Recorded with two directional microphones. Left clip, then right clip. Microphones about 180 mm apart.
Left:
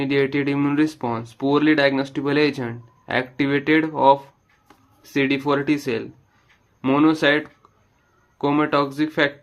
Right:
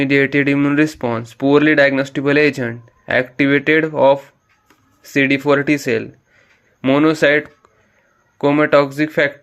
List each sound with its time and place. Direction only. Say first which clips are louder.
0.0 s speech: right 6 dB; 30° right (ahead or behind)